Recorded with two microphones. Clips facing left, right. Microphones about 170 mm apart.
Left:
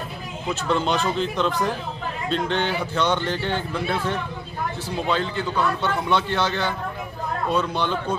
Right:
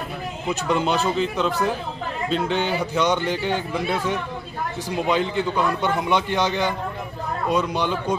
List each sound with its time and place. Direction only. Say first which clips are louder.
0.5 s speech: right 1 dB; 10° right (ahead or behind)